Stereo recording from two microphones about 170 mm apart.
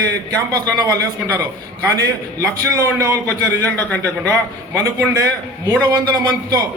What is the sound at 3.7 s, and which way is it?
Speech, 10° left (ahead or behind).